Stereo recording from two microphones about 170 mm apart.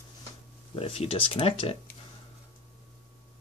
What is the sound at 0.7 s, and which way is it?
Speech, 35° left (ahead or behind).